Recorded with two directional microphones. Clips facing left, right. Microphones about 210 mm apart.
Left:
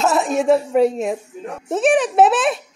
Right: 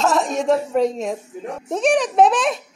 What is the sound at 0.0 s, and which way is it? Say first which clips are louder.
A woman's voice: left 2 dB; 5° left (ahead or behind).